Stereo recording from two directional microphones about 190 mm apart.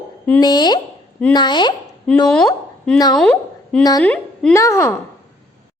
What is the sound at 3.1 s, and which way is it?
A woman's voice, 5° left (ahead or behind).